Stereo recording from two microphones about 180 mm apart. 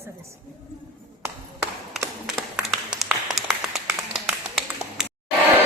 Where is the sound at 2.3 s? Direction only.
5° right (ahead or behind).